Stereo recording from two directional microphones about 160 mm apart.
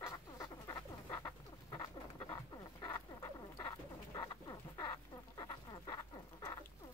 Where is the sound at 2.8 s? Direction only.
25° left (ahead or behind).